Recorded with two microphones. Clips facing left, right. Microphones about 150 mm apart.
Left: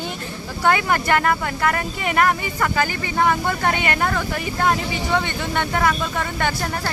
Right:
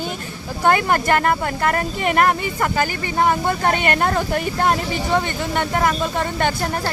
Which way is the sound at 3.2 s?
30° right (ahead or behind).